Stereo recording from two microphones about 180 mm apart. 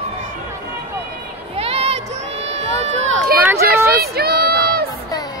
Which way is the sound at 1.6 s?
35° right (ahead or behind).